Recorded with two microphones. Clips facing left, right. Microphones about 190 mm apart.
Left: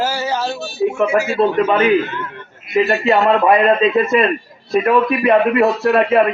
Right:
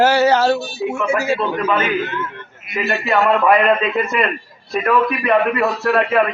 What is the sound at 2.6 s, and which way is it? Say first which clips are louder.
A man's voice: left 6 dB; 25° left (ahead or behind).